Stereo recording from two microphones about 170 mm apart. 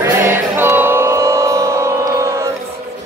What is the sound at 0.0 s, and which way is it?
Music, 15° right (ahead or behind).